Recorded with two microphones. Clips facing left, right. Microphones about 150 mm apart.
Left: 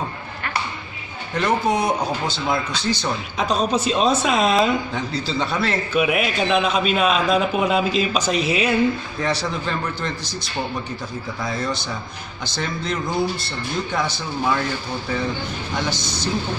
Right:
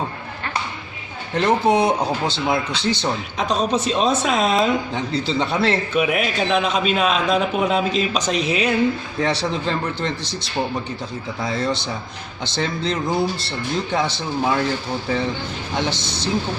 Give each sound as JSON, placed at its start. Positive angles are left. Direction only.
{"t": 1.3, "sound": "speech", "side_deg": -25}
{"t": 3.3, "sound": "a man's voice", "side_deg": 0}
{"t": 4.9, "sound": "speech", "side_deg": -25}
{"t": 5.9, "sound": "a man's voice", "side_deg": 5}
{"t": 9.2, "sound": "speech", "side_deg": -25}
{"t": 11.4, "sound": "speech", "side_deg": -25}
{"t": 15.7, "sound": "speech", "side_deg": -25}